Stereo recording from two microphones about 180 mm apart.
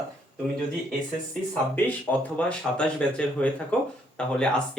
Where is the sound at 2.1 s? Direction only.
10° left (ahead or behind).